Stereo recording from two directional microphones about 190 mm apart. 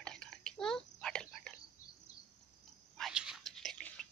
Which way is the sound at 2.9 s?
Centre (ahead or behind).